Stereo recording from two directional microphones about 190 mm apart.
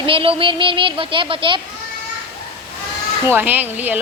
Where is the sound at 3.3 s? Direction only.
10° right (ahead or behind).